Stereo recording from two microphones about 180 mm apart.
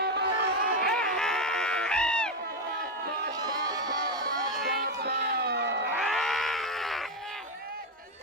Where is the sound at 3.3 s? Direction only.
20° right (ahead or behind).